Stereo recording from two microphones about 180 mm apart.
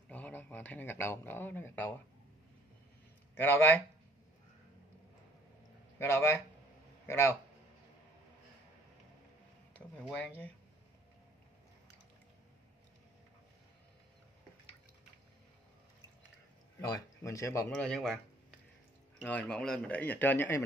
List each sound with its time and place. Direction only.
0.1 s speech: 10° left (ahead or behind)
3.3 s a man's voice: 10° left (ahead or behind)
5.9 s a man's voice: 15° left (ahead or behind)
10.1 s a man's voice: 10° left (ahead or behind)
16.9 s a man's voice: 15° left (ahead or behind)
17.7 s a man's voice: 5° left (ahead or behind)